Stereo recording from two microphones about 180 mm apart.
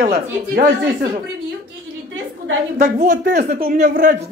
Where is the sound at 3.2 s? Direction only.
65° right (ahead or behind); by 4.1 s 45° right (ahead or behind).